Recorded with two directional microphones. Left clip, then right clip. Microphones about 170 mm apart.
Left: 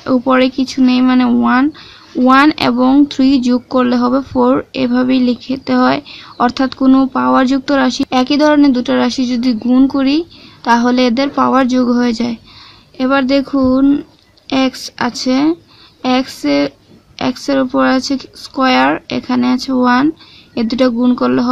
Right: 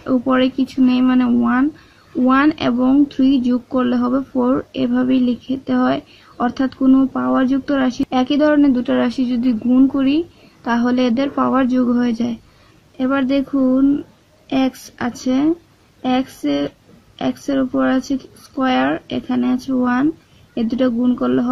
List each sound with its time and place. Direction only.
0.0 s speech: 25° left (ahead or behind)